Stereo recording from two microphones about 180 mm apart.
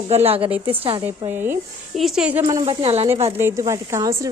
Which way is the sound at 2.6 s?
35° right (ahead or behind).